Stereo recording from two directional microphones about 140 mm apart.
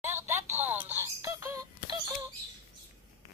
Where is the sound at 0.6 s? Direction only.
15° right (ahead or behind).